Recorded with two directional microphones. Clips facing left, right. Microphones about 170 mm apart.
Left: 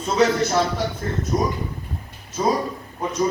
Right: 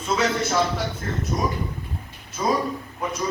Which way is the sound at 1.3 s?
25° left (ahead or behind).